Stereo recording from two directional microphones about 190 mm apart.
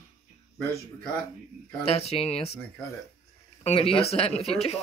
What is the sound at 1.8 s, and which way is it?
Speech, 30° left (ahead or behind).